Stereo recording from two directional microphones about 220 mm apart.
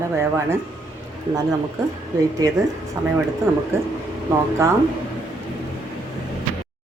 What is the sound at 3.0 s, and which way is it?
Speech, 15° right (ahead or behind).